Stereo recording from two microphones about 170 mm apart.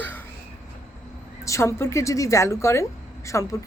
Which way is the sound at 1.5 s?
15° left (ahead or behind).